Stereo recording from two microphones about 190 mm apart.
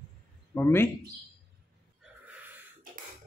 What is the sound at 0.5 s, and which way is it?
Speech, 10° left (ahead or behind).